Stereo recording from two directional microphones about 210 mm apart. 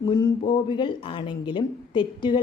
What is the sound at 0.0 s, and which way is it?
Speech, 20° left (ahead or behind).